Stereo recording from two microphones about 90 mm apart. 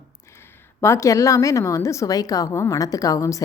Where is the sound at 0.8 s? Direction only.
30° left (ahead or behind).